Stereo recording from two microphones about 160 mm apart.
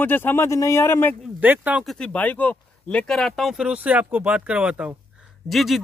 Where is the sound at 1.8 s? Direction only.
5° left (ahead or behind).